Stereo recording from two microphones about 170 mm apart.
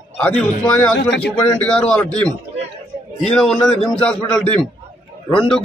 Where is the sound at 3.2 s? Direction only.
5° left (ahead or behind).